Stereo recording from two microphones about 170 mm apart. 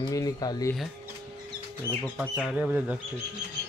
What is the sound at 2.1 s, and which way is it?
Speech, 5° right (ahead or behind).